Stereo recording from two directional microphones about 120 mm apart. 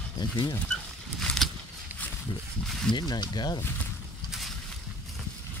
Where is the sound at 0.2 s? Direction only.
40° left (ahead or behind).